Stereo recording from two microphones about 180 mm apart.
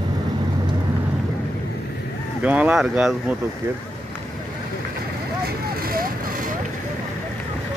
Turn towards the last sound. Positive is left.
turn(degrees=-55)  # may be behind; listen again after turning